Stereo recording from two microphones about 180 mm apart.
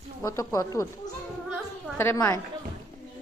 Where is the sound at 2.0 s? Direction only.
15° left (ahead or behind).